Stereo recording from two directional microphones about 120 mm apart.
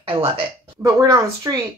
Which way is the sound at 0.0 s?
50° right (ahead or behind).